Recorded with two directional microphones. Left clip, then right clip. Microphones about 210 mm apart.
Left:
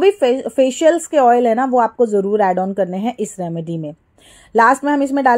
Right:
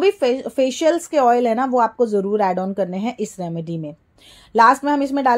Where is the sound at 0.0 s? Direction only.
25° left (ahead or behind).